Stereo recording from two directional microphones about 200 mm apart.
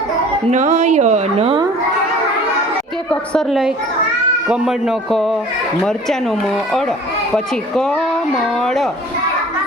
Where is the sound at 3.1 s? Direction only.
5° left (ahead or behind).